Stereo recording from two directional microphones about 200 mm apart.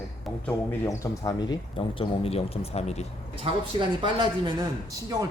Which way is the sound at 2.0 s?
30° left (ahead or behind).